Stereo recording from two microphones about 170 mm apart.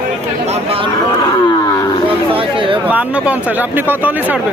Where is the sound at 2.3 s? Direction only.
30° right (ahead or behind).